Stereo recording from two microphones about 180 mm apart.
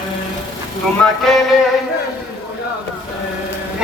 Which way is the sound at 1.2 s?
Centre (ahead or behind).